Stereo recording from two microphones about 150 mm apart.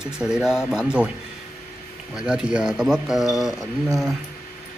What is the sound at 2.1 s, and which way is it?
Speech, 5° right (ahead or behind).